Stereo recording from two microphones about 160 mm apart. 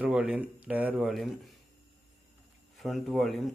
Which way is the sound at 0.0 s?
5° right (ahead or behind).